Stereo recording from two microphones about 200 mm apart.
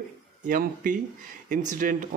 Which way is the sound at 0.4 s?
40° right (ahead or behind).